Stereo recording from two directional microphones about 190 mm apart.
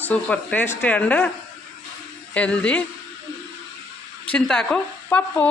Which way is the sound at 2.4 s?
5° left (ahead or behind).